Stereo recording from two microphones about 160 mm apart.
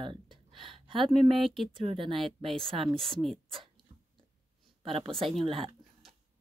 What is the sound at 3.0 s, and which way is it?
Speech, centre (ahead or behind).